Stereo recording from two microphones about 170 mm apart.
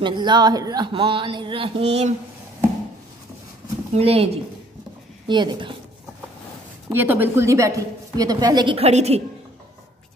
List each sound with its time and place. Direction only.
0.0 s speech: 25° right (ahead or behind)
3.9 s a woman's voice: 35° right (ahead or behind)
5.3 s speech: 25° right (ahead or behind)
6.9 s a woman's voice: 10° right (ahead or behind)
8.7 s a woman's voice: 40° right (ahead or behind)